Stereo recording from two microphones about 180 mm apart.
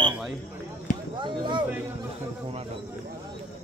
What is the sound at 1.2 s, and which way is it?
Speech, 25° right (ahead or behind).